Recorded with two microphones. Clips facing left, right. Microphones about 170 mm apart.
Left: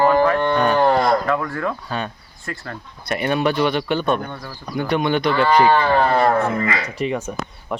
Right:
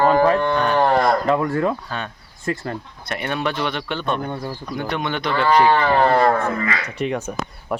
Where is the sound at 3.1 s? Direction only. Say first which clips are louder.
Left 5 dB; 10° left (ahead or behind).